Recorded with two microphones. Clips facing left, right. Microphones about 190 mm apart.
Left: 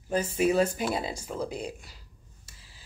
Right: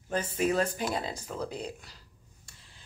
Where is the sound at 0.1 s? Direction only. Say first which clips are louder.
Left 3 dB; 10° left (ahead or behind).